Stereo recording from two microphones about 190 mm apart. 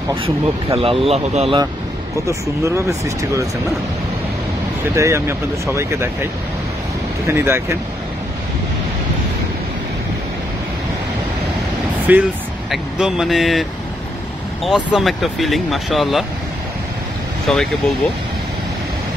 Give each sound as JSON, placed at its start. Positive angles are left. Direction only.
{"t": 0.7, "sound": "speech", "side_deg": -30}
{"t": 2.2, "sound": "speech", "side_deg": -15}
{"t": 4.9, "sound": "speech", "side_deg": -15}
{"t": 7.2, "sound": "speech", "side_deg": -15}
{"t": 12.1, "sound": "speech", "side_deg": -10}
{"t": 17.5, "sound": "speech", "side_deg": 5}